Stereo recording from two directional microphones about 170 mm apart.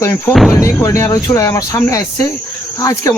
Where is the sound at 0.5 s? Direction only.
15° left (ahead or behind).